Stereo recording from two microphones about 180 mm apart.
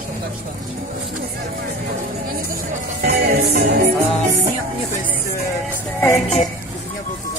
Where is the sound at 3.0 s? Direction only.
60° right (ahead or behind).